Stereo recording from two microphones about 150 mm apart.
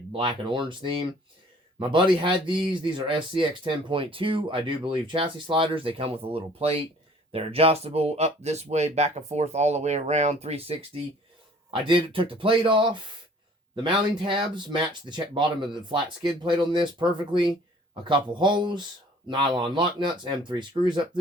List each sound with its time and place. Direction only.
0.1 s speech: 35° right (ahead or behind)
11.7 s speech: 35° right (ahead or behind)